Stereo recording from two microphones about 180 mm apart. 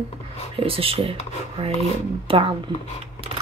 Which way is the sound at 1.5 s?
35° right (ahead or behind).